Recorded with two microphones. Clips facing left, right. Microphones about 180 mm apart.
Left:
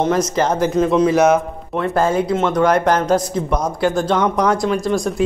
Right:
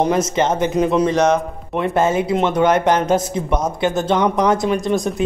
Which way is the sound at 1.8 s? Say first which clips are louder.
Even; 5° right (ahead or behind).